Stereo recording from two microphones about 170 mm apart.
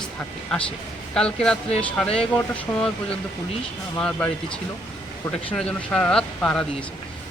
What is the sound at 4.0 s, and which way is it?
Speech, 10° left (ahead or behind).